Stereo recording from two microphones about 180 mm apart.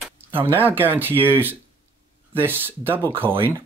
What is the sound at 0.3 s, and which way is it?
Speech, 10° right (ahead or behind).